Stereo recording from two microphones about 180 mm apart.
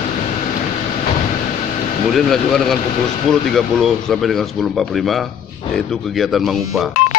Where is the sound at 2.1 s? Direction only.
Centre (ahead or behind).